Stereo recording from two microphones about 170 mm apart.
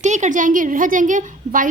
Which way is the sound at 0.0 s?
45° right (ahead or behind).